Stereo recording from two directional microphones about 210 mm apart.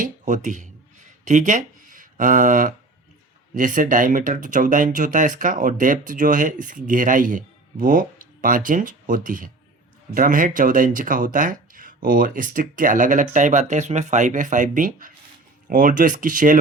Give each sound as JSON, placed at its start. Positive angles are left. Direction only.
{"t": 0.0, "sound": "speech", "side_deg": -35}